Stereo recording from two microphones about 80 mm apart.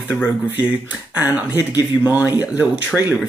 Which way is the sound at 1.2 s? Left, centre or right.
Right.